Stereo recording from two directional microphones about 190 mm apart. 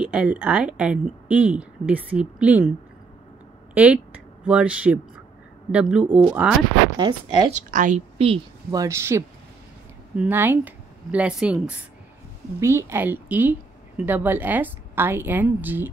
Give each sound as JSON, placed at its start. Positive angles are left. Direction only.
{"t": 0.0, "sound": "a woman's voice", "side_deg": -5}
{"t": 3.7, "sound": "a woman's voice", "side_deg": -5}
{"t": 7.0, "sound": "speech", "side_deg": -25}
{"t": 7.5, "sound": "a woman's voice", "side_deg": -40}
{"t": 8.7, "sound": "a woman's voice", "side_deg": -15}